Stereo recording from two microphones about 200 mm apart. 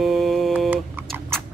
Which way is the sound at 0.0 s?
Centre (ahead or behind).